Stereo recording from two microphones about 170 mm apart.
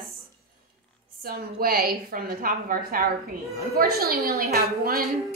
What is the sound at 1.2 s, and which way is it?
A woman's voice, 60° right (ahead or behind).